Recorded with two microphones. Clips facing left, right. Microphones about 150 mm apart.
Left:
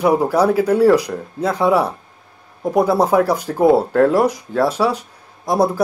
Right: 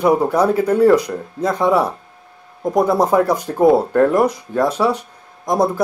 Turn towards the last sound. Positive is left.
turn(degrees=10)  # may be behind; listen again after turning